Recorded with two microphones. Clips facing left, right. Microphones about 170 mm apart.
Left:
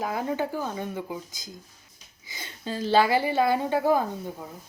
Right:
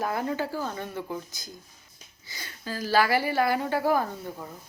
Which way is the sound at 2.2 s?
20° left (ahead or behind).